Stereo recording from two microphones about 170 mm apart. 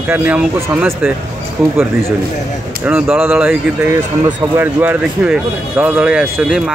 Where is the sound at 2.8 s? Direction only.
10° right (ahead or behind).